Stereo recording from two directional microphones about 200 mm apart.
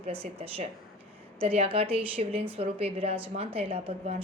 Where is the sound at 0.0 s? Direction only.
30° right (ahead or behind).